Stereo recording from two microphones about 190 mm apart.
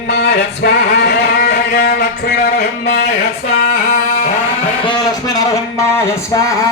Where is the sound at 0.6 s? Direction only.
65° left (ahead or behind).